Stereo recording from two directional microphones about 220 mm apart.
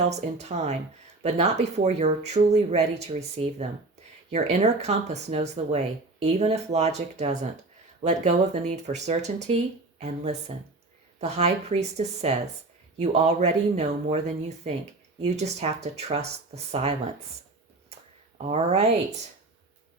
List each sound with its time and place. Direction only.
0.1 s speech: 30° right (ahead or behind)
11.2 s speech: 30° right (ahead or behind)
18.4 s speech: 30° right (ahead or behind)